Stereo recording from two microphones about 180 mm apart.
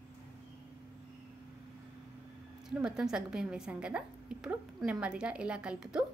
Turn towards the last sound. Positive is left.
turn(degrees=-5)  # may be behind; listen again after turning